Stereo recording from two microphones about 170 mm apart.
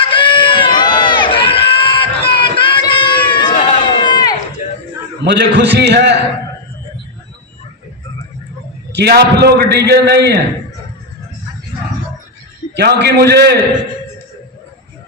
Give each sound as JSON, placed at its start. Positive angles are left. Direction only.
{"t": 0.0, "sound": "run", "side_deg": 30}
{"t": 4.0, "sound": "a sound", "side_deg": 25}
{"t": 4.6, "sound": "a sound", "side_deg": 45}
{"t": 5.2, "sound": "a man's voice", "side_deg": -80}
{"t": 8.9, "sound": "a man's voice", "side_deg": -75}
{"t": 12.7, "sound": "a man's voice", "side_deg": -75}